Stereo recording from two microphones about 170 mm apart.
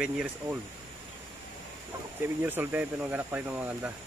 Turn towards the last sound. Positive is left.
turn(degrees=-10)  # may be behind; listen again after turning